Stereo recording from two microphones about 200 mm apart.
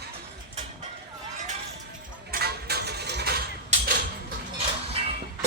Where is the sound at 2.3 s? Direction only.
55° right (ahead or behind).